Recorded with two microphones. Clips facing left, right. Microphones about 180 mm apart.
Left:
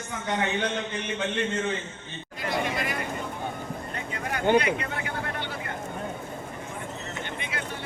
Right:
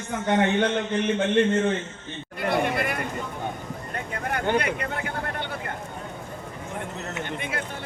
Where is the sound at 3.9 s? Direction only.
55° right (ahead or behind).